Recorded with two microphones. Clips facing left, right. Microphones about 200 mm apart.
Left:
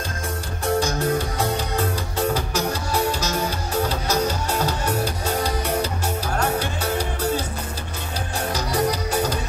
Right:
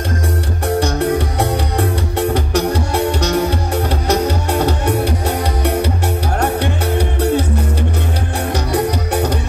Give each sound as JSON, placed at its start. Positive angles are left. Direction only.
{"t": 0.7, "sound": "music", "side_deg": -65}